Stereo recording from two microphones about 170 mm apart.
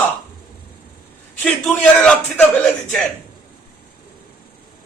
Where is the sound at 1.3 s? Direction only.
5° left (ahead or behind).